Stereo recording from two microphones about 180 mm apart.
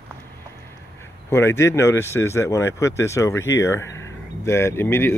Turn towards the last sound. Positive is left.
turn(degrees=15)  # may be behind; listen again after turning